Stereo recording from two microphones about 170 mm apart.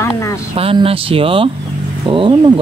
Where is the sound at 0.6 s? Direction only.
35° right (ahead or behind).